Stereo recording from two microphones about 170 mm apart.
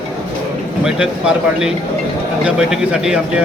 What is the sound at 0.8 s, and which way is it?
A man's voice, 5° right (ahead or behind).